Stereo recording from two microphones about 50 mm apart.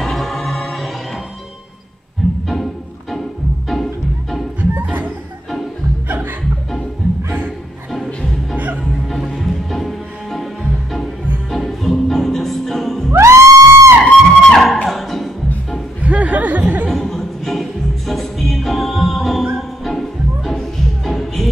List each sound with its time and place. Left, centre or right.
0.0 s music: centre
2.4 s music: centre
6.0 s music: right
9.0 s music: centre
13.2 s music: right
14.1 s music: centre
16.0 s music: right
16.9 s music: centre